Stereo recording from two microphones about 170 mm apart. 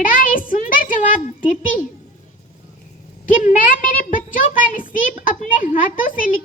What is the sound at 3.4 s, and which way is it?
A child's voice, 55° left (ahead or behind).